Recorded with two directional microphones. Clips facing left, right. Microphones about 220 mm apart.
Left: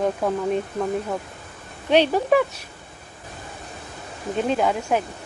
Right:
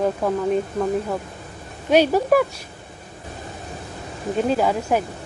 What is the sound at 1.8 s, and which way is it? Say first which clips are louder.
Speech: right 2 dB; 5° right (ahead or behind).